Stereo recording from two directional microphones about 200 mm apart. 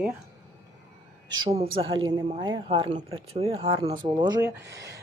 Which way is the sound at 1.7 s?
25° right (ahead or behind).